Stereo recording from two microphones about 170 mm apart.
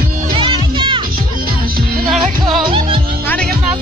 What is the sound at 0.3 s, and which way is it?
Music, 30° right (ahead or behind).